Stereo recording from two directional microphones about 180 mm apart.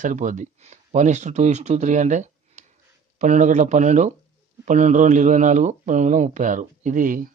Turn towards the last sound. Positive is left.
turn(degrees=-50)  # may be behind; listen again after turning